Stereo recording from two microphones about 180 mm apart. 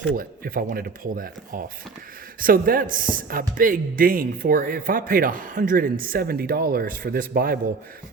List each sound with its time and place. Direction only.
0.2 s speech: 50° right (ahead or behind)